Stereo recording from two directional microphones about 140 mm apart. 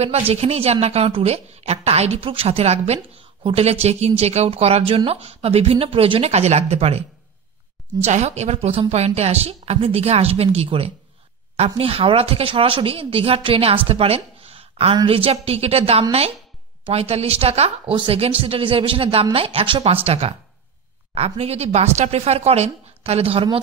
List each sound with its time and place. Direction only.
0.0 s speech: 45° right (ahead or behind)
8.0 s a man's voice: 55° right (ahead or behind)